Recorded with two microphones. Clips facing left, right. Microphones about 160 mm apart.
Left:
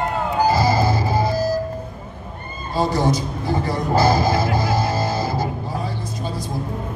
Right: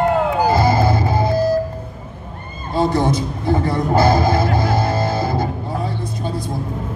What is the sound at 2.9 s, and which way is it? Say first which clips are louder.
Speech: right 1 dB; 55° right (ahead or behind).